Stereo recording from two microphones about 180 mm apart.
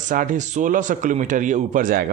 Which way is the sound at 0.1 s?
50° right (ahead or behind).